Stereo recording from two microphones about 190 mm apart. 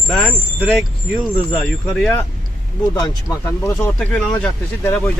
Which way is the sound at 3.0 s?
20° left (ahead or behind).